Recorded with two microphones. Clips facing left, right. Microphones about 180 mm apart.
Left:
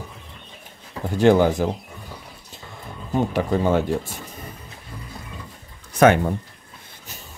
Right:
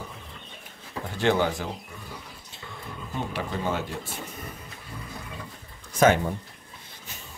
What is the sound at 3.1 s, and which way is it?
Speech, 45° left (ahead or behind).